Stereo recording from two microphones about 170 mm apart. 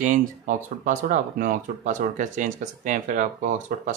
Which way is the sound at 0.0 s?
50° right (ahead or behind).